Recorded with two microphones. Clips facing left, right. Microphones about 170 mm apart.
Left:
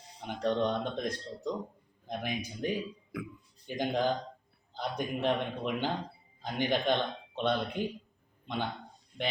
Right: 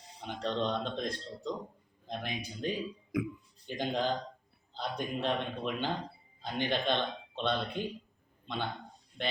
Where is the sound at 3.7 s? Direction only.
15° left (ahead or behind).